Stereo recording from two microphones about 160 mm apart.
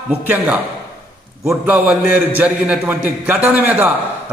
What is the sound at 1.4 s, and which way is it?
A man's voice, 15° right (ahead or behind).